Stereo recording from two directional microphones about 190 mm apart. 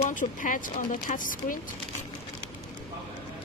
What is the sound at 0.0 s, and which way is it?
A woman's voice, 45° left (ahead or behind).